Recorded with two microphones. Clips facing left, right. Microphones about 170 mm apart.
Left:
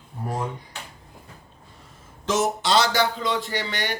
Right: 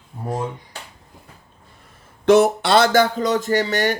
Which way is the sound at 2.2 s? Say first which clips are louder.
Right 9 dB; 60° right (ahead or behind).